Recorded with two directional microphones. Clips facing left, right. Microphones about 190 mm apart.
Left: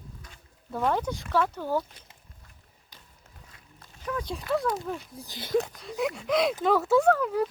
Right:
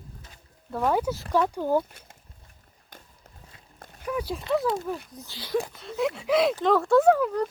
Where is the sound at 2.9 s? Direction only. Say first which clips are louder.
Right 6 dB; 55° right (ahead or behind).